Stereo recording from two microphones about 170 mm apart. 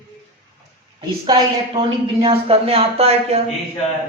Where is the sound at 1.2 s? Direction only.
25° right (ahead or behind).